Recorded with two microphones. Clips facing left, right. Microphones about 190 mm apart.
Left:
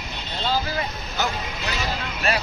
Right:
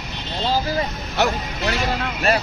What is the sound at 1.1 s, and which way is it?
Vehicle, 70° right (ahead or behind).